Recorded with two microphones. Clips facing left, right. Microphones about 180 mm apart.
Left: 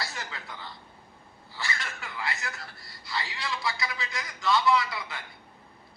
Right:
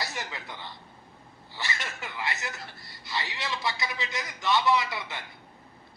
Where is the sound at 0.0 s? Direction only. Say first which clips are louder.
Right 2 dB; 20° right (ahead or behind).